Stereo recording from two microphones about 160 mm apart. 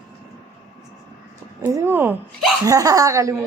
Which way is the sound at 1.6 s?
15° right (ahead or behind).